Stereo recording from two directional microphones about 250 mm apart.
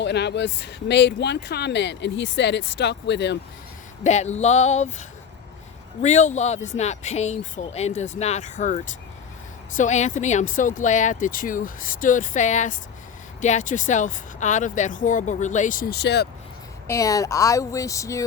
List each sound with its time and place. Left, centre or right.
0.0 s speech: left
4.0 s speech: left
16.8 s speech: centre